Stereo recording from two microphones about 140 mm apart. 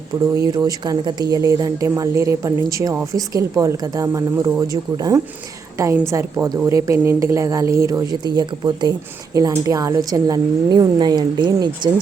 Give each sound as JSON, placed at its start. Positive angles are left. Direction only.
{"t": 0.3, "sound": "speech", "side_deg": -25}